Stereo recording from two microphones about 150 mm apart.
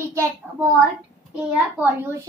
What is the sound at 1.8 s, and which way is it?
Speech, 10° right (ahead or behind).